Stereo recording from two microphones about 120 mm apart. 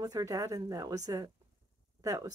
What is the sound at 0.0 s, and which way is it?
Speech, 30° right (ahead or behind).